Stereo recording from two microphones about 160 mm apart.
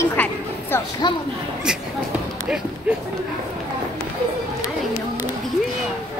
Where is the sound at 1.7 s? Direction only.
5° right (ahead or behind).